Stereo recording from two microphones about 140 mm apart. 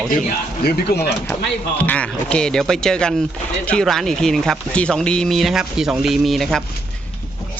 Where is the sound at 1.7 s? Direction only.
10° left (ahead or behind).